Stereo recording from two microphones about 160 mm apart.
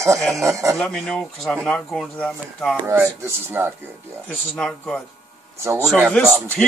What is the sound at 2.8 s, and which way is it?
Speech, 15° right (ahead or behind).